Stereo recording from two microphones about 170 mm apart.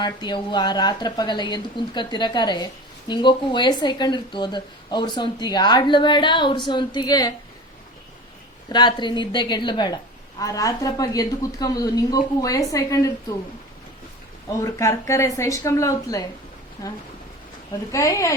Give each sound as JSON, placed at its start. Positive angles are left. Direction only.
{"t": 0.0, "sound": "speech", "side_deg": 25}
{"t": 8.7, "sound": "speech", "side_deg": 25}
{"t": 14.6, "sound": "speech", "side_deg": 20}